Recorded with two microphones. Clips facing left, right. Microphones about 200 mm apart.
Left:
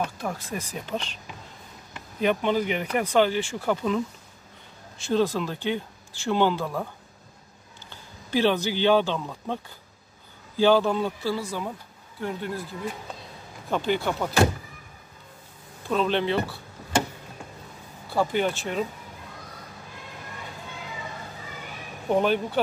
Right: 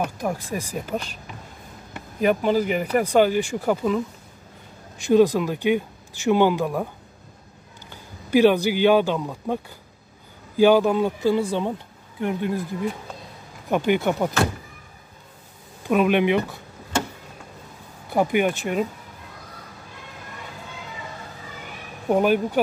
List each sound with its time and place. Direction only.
0.0 s speech: 10° right (ahead or behind)
7.9 s speech: 10° right (ahead or behind)
10.6 s speech: 10° right (ahead or behind)
13.7 s speech: 15° right (ahead or behind)
15.9 s speech: 15° right (ahead or behind)
18.1 s speech: 15° right (ahead or behind)
22.1 s speech: 10° right (ahead or behind)